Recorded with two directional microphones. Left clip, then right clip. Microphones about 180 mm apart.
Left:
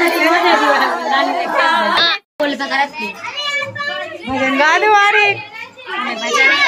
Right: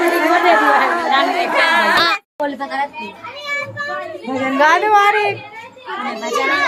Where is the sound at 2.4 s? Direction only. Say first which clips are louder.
Left 4 dB; 15° right (ahead or behind).